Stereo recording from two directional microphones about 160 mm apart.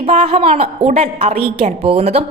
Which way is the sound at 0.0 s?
40° right (ahead or behind).